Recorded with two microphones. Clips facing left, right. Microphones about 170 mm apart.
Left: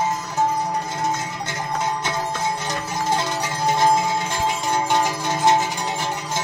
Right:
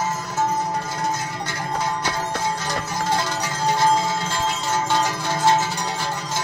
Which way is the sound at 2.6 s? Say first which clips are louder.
Even; 20° left (ahead or behind).